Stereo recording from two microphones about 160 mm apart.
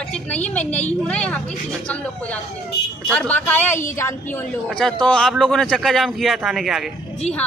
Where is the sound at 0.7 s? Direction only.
45° left (ahead or behind).